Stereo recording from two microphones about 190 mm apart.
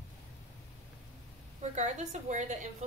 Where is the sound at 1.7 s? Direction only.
40° right (ahead or behind).